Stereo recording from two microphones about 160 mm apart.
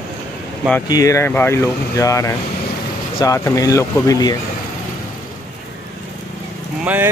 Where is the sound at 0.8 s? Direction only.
20° left (ahead or behind).